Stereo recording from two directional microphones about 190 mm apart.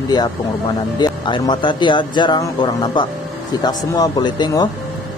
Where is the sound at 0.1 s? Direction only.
20° left (ahead or behind).